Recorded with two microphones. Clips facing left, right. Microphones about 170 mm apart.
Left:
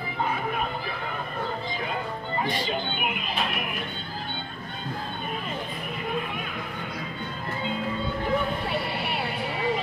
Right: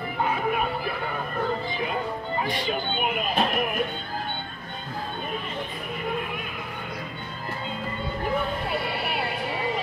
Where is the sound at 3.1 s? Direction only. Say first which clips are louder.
Right 6 dB; 45° right (ahead or behind).